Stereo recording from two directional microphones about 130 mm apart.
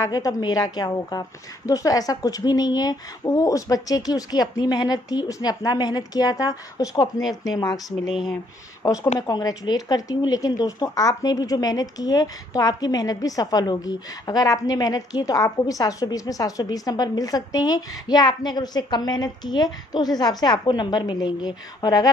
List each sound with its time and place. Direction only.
0.0 s speech: 25° left (ahead or behind)
7.2 s a woman's voice: centre (ahead or behind)
7.5 s speech: 30° left (ahead or behind)
8.1 s a woman's voice: centre (ahead or behind)
8.8 s speech: 25° left (ahead or behind)